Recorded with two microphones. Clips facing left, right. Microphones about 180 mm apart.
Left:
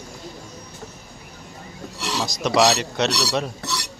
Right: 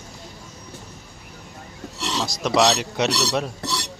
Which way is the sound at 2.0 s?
5° left (ahead or behind).